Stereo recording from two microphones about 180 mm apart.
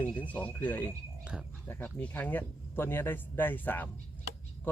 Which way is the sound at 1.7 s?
10° left (ahead or behind).